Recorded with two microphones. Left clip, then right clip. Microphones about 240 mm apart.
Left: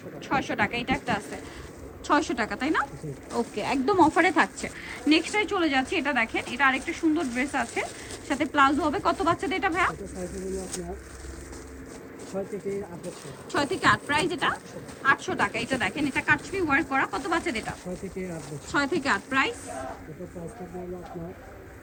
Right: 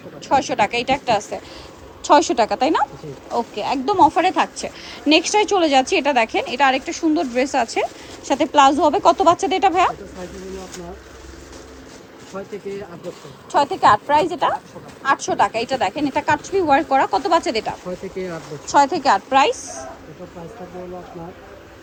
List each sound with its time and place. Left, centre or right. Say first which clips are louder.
0.3 s a woman's voice: right 9 dB; centre
3.3 s a woman's voice: right 6 dB; centre
13.5 s a woman's voice: right 9 dB; centre